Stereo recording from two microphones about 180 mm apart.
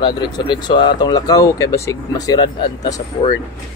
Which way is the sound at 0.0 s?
25° left (ahead or behind).